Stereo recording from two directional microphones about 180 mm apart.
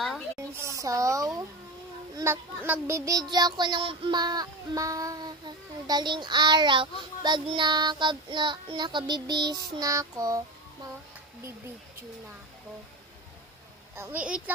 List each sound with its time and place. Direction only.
0.3 s speech: 15° right (ahead or behind)
13.9 s a woman's voice: 10° right (ahead or behind)